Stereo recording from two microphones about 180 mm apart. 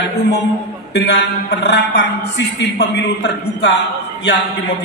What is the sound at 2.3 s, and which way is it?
A man's voice, 75° left (ahead or behind).